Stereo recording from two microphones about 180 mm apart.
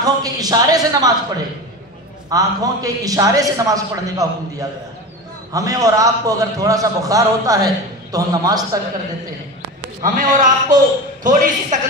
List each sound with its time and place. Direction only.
0.0 s a man's voice: 20° right (ahead or behind)
2.2 s a man's voice: 20° right (ahead or behind)
10.0 s a man's voice: 45° right (ahead or behind)